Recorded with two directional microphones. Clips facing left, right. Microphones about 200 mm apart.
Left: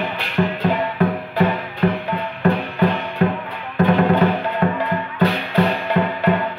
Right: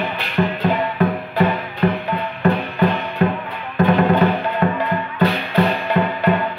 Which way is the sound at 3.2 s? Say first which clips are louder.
Even; 40° left (ahead or behind).